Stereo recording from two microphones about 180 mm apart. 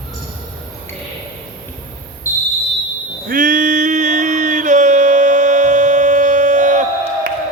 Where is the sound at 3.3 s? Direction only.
50° right (ahead or behind).